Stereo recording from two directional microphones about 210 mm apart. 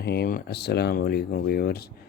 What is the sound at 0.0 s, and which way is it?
Speech, 50° left (ahead or behind).